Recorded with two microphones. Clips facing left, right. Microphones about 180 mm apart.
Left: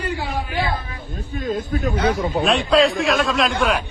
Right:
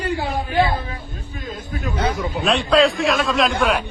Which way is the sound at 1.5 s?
45° left (ahead or behind).